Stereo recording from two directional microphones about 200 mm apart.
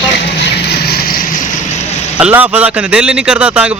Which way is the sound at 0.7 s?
50° left (ahead or behind).